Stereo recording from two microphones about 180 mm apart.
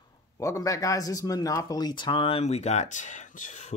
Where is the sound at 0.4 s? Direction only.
20° left (ahead or behind).